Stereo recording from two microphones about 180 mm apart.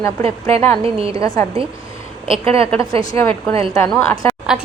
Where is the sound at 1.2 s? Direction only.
20° left (ahead or behind).